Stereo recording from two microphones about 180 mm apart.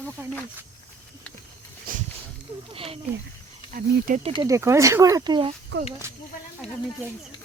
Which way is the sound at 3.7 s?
50° right (ahead or behind).